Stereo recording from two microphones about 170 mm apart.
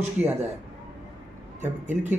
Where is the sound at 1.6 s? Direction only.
10° right (ahead or behind).